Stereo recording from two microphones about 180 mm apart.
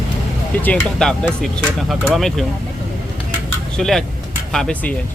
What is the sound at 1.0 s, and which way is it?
Speech, 5° left (ahead or behind).